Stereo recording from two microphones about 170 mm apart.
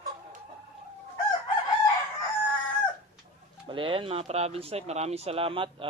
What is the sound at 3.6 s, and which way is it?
Speech, 30° right (ahead or behind).